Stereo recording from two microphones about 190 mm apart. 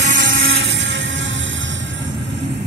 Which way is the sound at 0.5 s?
75° right (ahead or behind).